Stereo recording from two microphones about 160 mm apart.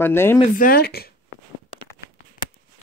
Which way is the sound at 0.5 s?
65° left (ahead or behind).